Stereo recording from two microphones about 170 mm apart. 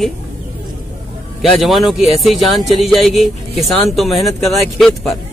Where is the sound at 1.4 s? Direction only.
Centre (ahead or behind).